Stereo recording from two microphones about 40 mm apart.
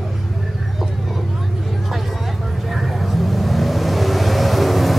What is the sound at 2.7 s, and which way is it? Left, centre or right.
Vehicle, centre.